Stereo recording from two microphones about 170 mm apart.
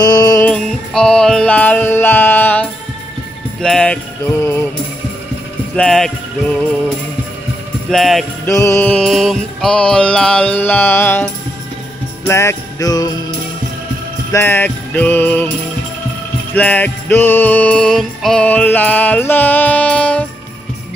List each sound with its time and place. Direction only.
0.0 s music: 20° left (ahead or behind)
0.5 s music: 5° left (ahead or behind)
5.8 s speech: centre (ahead or behind)
7.9 s speech: centre (ahead or behind)
8.5 s music: 20° left (ahead or behind)
12.3 s jingle bell: 15° left (ahead or behind)
14.3 s music: 15° left (ahead or behind)
16.5 s music: 10° left (ahead or behind)